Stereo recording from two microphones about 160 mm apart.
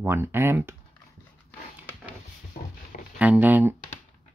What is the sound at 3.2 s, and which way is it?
Speech, 10° right (ahead or behind).